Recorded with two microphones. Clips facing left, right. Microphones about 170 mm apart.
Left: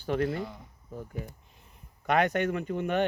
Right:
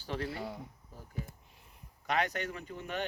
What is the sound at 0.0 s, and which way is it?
Speech, 50° left (ahead or behind).